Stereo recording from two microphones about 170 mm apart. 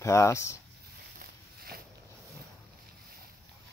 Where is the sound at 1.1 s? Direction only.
60° right (ahead or behind).